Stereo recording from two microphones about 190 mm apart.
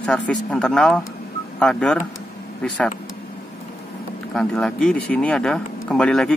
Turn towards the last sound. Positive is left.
turn(degrees=5)  # may be behind; listen again after turning